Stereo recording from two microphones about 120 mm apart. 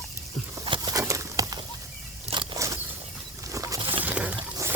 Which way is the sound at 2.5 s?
25° right (ahead or behind).